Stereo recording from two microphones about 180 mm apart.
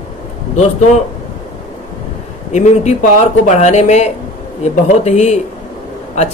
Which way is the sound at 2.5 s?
40° left (ahead or behind).